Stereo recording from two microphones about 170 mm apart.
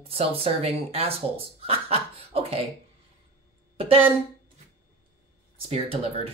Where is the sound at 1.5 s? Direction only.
35° right (ahead or behind).